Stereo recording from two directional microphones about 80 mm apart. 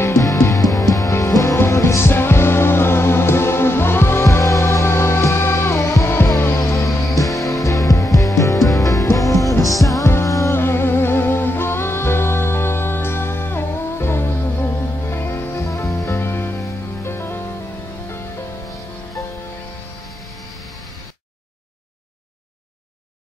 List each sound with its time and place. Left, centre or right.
0.0 s music: left
10.5 s music: left
16.2 s music: left